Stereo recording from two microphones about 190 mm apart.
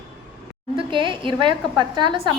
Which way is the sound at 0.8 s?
25° right (ahead or behind).